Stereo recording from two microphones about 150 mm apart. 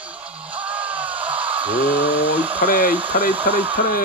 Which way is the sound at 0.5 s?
10° right (ahead or behind).